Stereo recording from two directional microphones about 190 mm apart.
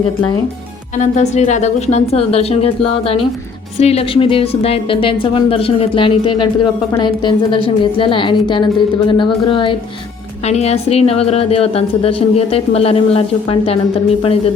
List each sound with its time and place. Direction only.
0.9 s a woman's voice: 40° left (ahead or behind)